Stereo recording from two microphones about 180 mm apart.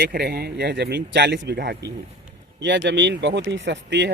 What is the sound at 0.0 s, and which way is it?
Speech, 60° right (ahead or behind).